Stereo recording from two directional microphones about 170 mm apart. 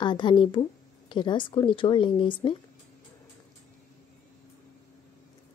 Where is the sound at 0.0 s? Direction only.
25° left (ahead or behind).